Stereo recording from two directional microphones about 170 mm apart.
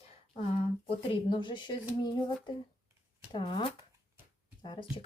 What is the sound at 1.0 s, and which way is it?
Speech, 30° left (ahead or behind).